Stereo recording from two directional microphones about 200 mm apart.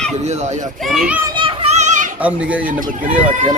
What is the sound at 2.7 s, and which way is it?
Speech, 45° right (ahead or behind).